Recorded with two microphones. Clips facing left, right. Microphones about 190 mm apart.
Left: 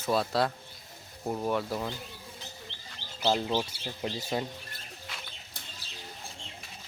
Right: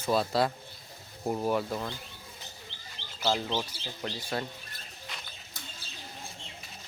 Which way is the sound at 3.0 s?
30° right (ahead or behind).